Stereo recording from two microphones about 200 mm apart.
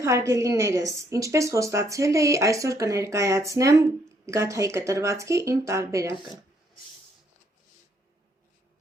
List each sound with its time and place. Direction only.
0.0 s a woman's voice: 15° right (ahead or behind)